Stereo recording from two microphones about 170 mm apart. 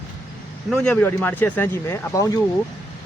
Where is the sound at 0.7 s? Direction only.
5° left (ahead or behind).